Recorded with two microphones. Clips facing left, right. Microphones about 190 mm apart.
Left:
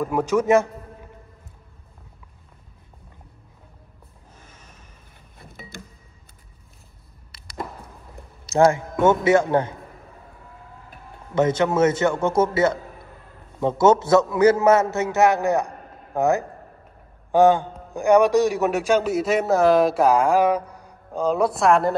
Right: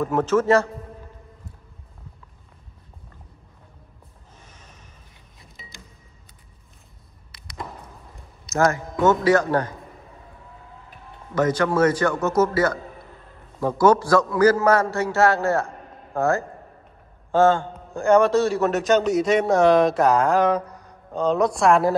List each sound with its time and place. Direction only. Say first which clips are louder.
0.0 s a man's voice: right 1 dB; 10° left (ahead or behind)
5.4 s a sound: left 7 dB; 60° left (ahead or behind)
8.5 s a man's voice: left 4 dB; 30° left (ahead or behind)
11.3 s a man's voice: left 1 dB; 25° left (ahead or behind); by 21.9 s centre (ahead or behind)